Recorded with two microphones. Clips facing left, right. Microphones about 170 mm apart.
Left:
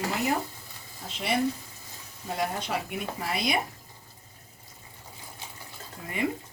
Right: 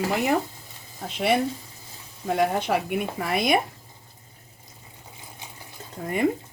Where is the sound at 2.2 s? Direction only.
60° right (ahead or behind).